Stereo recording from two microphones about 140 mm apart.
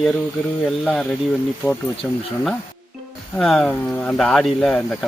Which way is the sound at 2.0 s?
10° left (ahead or behind).